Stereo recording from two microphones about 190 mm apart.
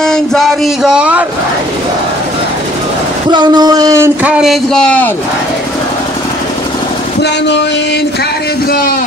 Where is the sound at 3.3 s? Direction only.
20° right (ahead or behind); by 5.1 s 5° left (ahead or behind).